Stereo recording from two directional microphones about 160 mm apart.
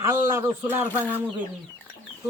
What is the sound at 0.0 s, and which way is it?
Speech, 20° right (ahead or behind).